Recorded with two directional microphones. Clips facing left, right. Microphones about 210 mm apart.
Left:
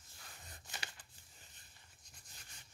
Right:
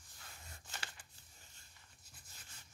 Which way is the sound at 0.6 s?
15° left (ahead or behind).